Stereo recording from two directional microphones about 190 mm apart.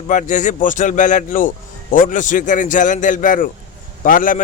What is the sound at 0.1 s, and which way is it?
A man's voice, 40° left (ahead or behind).